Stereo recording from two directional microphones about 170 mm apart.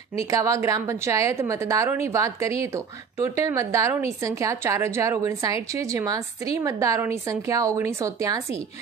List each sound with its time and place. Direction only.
0.3 s a woman's voice: 20° right (ahead or behind)